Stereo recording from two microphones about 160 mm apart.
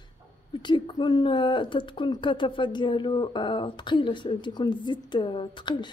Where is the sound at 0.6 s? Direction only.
30° left (ahead or behind).